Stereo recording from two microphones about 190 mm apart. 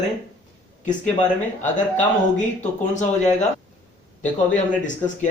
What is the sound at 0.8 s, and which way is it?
Speech, 40° left (ahead or behind).